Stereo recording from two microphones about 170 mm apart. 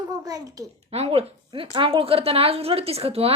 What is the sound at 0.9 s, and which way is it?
A woman's voice, 40° right (ahead or behind).